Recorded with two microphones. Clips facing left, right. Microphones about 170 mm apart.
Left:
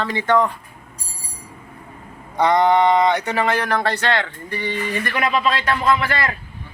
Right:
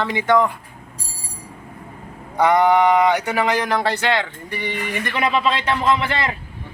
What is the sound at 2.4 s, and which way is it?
Speech, 10° right (ahead or behind).